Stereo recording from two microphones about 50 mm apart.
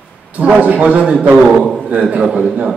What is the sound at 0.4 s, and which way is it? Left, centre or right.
A woman's voice, right.